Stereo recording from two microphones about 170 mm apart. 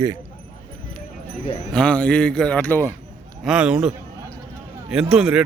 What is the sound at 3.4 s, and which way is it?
Speech, 5° right (ahead or behind).